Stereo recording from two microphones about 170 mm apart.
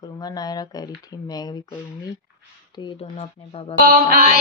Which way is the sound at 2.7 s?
30° left (ahead or behind).